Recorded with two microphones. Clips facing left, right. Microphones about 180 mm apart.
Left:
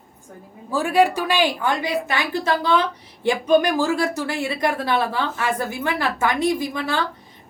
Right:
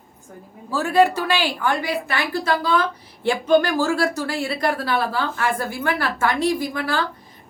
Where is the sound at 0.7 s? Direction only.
15° left (ahead or behind).